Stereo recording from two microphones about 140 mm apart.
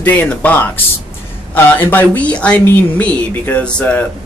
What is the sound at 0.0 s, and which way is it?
A woman's voice, 10° left (ahead or behind).